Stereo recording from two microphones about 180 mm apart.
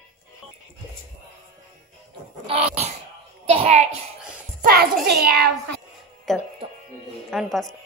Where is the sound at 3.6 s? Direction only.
35° right (ahead or behind).